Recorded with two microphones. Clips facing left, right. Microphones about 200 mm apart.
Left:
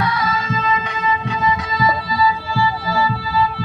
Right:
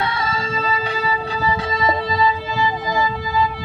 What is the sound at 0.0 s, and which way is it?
Music, 25° right (ahead or behind).